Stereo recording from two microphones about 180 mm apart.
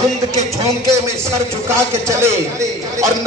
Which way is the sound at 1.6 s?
15° right (ahead or behind).